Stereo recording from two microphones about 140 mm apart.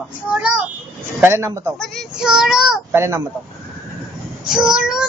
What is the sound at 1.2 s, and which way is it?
Speech, 20° right (ahead or behind).